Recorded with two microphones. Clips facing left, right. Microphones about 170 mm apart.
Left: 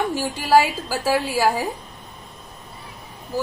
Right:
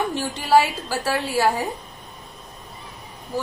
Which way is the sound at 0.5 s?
10° left (ahead or behind).